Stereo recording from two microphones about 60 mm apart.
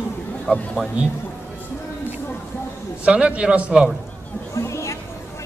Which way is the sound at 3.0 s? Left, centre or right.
Centre.